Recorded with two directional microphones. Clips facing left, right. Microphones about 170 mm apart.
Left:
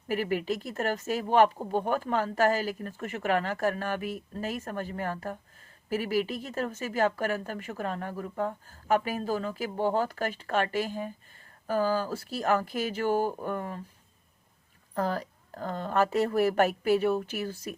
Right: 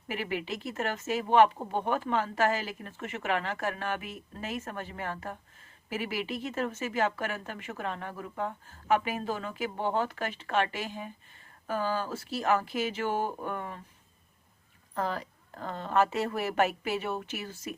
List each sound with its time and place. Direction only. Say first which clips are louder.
0.1 s speech: left 5 dB; 40° left (ahead or behind)
14.9 s speech: left 3 dB; 40° left (ahead or behind)